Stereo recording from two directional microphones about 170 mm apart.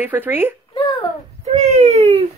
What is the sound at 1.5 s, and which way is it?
Baby cry, 45° right (ahead or behind).